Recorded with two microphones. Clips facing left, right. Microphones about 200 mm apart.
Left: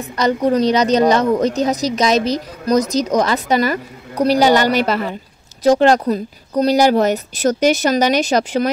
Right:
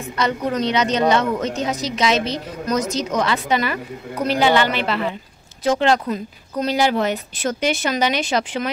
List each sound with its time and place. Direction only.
0.2 s a woman's voice: 35° left (ahead or behind)